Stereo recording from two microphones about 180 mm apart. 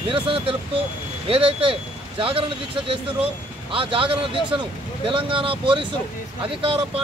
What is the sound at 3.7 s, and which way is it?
Speech, 30° right (ahead or behind).